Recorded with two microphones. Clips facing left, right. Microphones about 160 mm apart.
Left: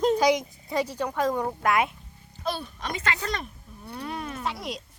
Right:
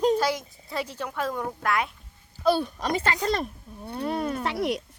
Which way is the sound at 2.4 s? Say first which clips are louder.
Right 8 dB; 35° right (ahead or behind).